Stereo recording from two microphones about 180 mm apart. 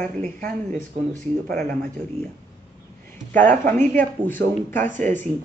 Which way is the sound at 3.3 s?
45° right (ahead or behind).